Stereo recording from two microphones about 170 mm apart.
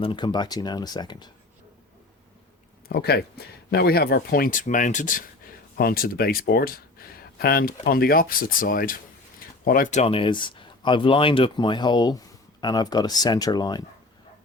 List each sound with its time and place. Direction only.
0.0 s speech: 30° left (ahead or behind)
2.9 s speech: 65° left (ahead or behind); by 5.2 s 50° left (ahead or behind)
5.7 s speech: 60° left (ahead or behind); by 13.8 s 25° left (ahead or behind)